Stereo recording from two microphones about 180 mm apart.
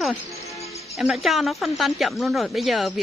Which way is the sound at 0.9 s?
Centre (ahead or behind).